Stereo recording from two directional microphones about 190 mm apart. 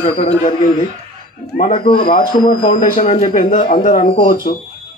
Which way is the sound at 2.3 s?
25° left (ahead or behind).